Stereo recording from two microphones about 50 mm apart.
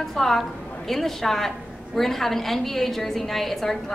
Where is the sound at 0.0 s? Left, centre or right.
Centre.